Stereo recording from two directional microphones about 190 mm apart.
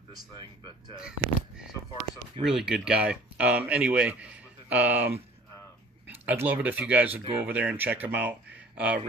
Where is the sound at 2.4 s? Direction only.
5° right (ahead or behind).